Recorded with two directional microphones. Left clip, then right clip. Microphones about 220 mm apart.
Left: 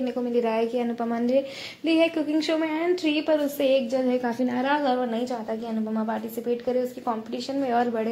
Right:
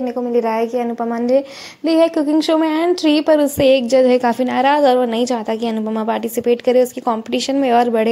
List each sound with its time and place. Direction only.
0.3 s a woman's voice: 15° right (ahead or behind); by 8.1 s 35° right (ahead or behind)